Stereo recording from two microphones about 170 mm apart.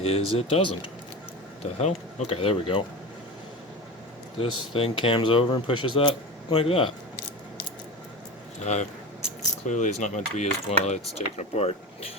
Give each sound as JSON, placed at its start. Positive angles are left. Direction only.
{"t": 0.0, "sound": "speech", "side_deg": 35}
{"t": 1.8, "sound": "speech", "side_deg": 40}
{"t": 4.4, "sound": "speech", "side_deg": 30}
{"t": 8.6, "sound": "a sound", "side_deg": 45}
{"t": 10.8, "sound": "speech", "side_deg": 40}